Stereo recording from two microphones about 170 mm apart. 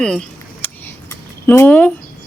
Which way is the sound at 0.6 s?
10° left (ahead or behind).